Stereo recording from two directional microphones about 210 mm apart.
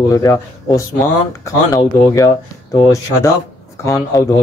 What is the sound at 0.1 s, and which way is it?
Speech, 15° left (ahead or behind).